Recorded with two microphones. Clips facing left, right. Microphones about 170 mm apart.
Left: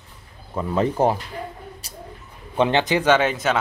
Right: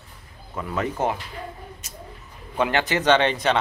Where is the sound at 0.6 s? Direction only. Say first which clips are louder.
Left 5 dB; 30° left (ahead or behind).